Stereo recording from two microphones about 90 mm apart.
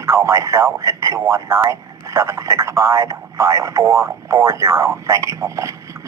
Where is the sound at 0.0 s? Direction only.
30° right (ahead or behind).